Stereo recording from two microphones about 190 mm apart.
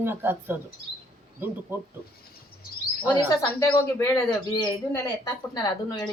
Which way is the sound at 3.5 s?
10° left (ahead or behind).